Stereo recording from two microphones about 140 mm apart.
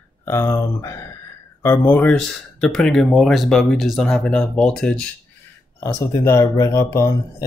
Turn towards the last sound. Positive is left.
turn(degrees=20)  # may be behind; listen again after turning